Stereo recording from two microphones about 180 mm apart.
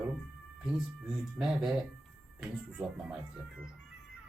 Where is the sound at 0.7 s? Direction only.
5° right (ahead or behind).